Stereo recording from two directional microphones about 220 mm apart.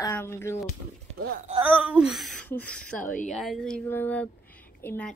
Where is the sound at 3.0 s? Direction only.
35° left (ahead or behind).